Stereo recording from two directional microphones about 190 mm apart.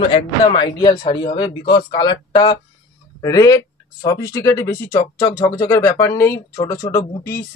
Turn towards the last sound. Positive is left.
turn(degrees=15)  # may be behind; listen again after turning